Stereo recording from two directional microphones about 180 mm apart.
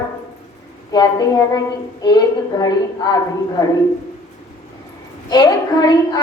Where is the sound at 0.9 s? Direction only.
20° left (ahead or behind).